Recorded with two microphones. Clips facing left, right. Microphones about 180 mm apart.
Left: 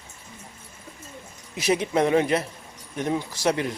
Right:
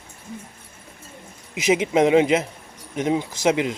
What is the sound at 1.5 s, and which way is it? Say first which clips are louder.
A man's voice: right 4 dB; 20° right (ahead or behind).